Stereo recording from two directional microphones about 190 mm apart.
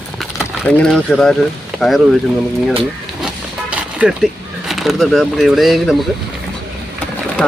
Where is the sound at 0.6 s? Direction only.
5° left (ahead or behind).